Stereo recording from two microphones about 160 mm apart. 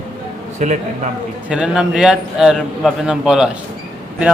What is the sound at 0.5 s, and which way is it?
Speech, 50° right (ahead or behind).